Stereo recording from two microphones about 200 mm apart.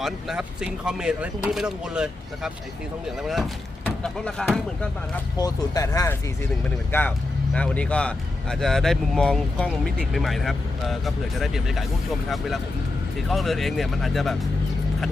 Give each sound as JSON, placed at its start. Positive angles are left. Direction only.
{"t": 0.0, "sound": "speech", "side_deg": -5}
{"t": 5.4, "sound": "speech", "side_deg": 20}
{"t": 13.1, "sound": "speech", "side_deg": 0}